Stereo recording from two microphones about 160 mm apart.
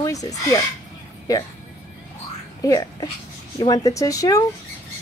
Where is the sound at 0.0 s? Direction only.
20° left (ahead or behind).